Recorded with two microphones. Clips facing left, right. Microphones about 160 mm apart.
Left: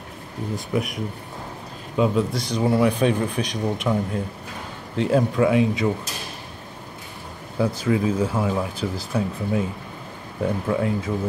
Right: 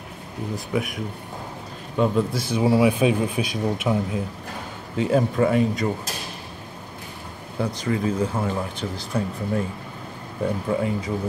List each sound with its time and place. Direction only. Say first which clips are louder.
0.7 s speech: left 1 dB; centre (ahead or behind)
7.5 s speech: left 3 dB; 5° left (ahead or behind)
10.7 s speech: left 1 dB; centre (ahead or behind)